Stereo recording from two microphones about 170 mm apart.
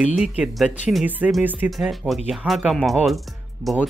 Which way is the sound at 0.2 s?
5° right (ahead or behind).